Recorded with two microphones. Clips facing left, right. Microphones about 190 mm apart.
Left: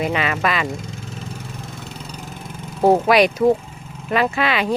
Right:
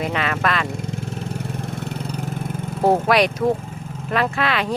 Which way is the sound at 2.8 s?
Centre (ahead or behind).